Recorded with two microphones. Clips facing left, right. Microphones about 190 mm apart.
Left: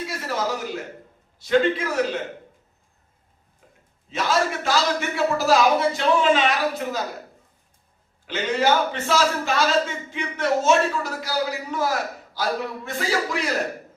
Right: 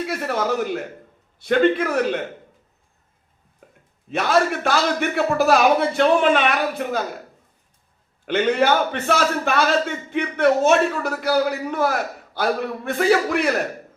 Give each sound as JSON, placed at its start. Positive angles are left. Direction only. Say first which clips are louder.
{"t": 0.1, "sound": "a man's voice", "louder": "right 4 dB", "side_deg": -60}
{"t": 3.6, "sound": "a sound", "louder": "right 5 dB", "side_deg": -55}
{"t": 4.1, "sound": "a man's voice", "louder": "right 4 dB", "side_deg": -60}
{"t": 8.3, "sound": "a man's voice", "louder": "right 3 dB", "side_deg": -60}